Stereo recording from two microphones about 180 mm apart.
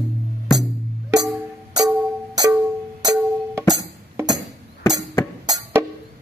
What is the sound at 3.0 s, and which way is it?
Music, 20° right (ahead or behind).